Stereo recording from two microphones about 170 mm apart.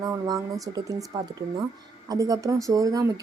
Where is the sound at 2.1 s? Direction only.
20° right (ahead or behind).